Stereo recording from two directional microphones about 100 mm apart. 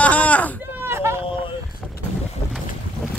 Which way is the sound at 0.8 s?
25° right (ahead or behind).